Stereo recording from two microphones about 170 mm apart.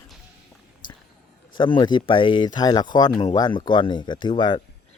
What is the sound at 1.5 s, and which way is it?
Speech, 25° left (ahead or behind).